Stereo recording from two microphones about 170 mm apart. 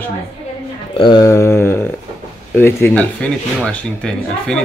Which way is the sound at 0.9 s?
25° left (ahead or behind).